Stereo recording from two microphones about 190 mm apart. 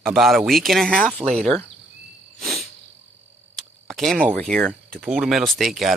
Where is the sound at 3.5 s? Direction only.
Centre (ahead or behind).